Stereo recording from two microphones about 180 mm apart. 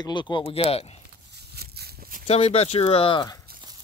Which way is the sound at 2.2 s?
35° left (ahead or behind).